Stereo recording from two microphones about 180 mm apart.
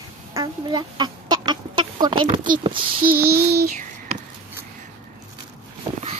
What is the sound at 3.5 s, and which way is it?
Child singing, 60° right (ahead or behind).